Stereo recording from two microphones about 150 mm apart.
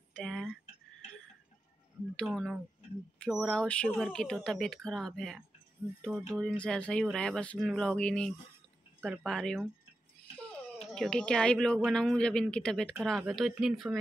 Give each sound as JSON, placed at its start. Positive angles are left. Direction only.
{"t": 0.1, "sound": "a sound", "side_deg": 0}
{"t": 2.1, "sound": "speech", "side_deg": 5}
{"t": 10.8, "sound": "speech", "side_deg": 5}